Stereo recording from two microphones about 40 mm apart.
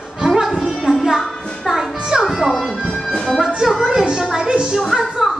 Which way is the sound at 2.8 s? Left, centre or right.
Centre.